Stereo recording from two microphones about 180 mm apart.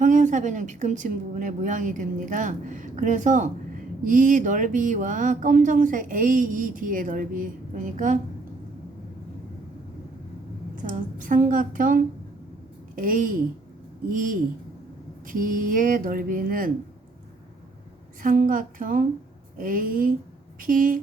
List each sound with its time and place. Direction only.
0.0 s speech: 45° right (ahead or behind)
10.8 s speech: 45° right (ahead or behind)
18.2 s speech: 50° right (ahead or behind)